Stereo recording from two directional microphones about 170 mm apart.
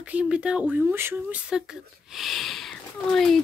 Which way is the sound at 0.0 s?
5° right (ahead or behind).